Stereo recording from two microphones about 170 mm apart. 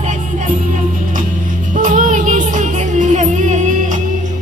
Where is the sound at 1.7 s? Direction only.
50° right (ahead or behind).